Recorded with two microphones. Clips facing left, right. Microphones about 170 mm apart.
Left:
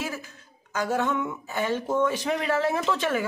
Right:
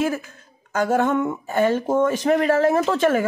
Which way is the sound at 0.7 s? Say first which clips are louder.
Right 6 dB; 50° right (ahead or behind).